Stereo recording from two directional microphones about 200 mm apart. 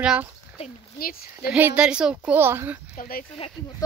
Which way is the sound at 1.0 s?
45° left (ahead or behind).